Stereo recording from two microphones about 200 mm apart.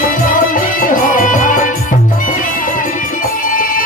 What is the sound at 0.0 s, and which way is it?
Music, 40° left (ahead or behind).